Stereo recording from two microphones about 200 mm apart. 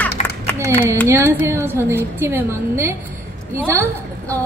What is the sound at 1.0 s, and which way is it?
A woman's voice, 10° right (ahead or behind).